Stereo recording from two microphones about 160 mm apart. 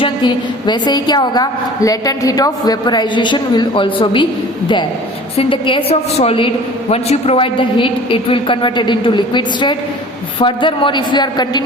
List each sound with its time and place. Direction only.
0.0 s a woman's voice: 30° left (ahead or behind)
5.4 s a woman's voice: 30° left (ahead or behind)